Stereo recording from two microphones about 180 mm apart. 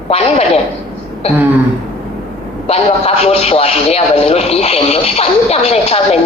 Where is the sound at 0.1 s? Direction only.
35° left (ahead or behind).